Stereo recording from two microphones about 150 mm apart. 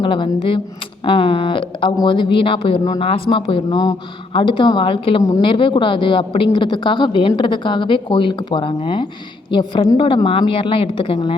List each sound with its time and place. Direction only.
0.0 s speech: 35° left (ahead or behind)
3.7 s speech: 25° left (ahead or behind)